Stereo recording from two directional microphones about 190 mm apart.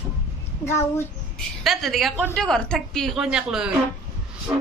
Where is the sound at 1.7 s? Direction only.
Centre (ahead or behind).